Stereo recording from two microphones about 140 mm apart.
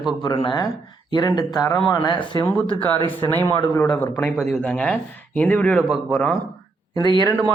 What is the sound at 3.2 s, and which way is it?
Speech, 15° left (ahead or behind).